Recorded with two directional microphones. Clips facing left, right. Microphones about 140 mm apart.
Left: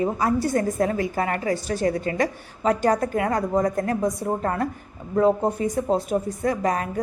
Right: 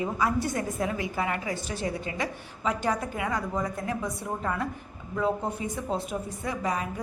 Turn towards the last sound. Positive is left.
turn(degrees=50)  # may be behind; listen again after turning